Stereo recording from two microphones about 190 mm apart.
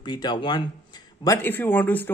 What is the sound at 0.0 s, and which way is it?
Speech, 25° left (ahead or behind).